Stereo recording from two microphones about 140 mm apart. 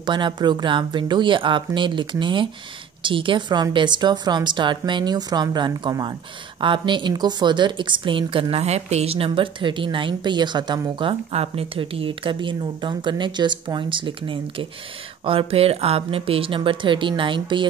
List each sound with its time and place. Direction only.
0.0 s a woman's voice: 30° right (ahead or behind)